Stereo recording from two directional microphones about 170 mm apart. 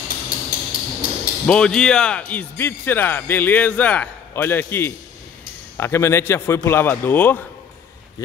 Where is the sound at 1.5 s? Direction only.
5° left (ahead or behind).